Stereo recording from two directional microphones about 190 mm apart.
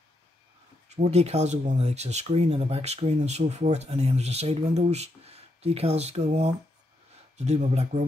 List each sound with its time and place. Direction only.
0.8 s speech: 35° right (ahead or behind)